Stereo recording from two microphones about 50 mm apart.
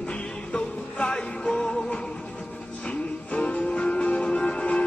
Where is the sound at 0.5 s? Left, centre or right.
Left.